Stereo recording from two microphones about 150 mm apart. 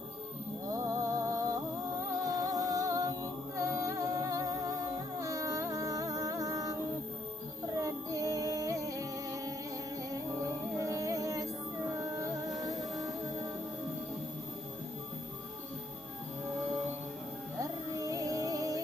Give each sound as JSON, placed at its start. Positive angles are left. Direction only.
{"t": 0.7, "sound": "music", "side_deg": -20}
{"t": 2.2, "sound": "humming", "side_deg": -25}
{"t": 5.2, "sound": "music", "side_deg": -20}
{"t": 10.8, "sound": "music", "side_deg": -20}
{"t": 17.6, "sound": "music", "side_deg": -20}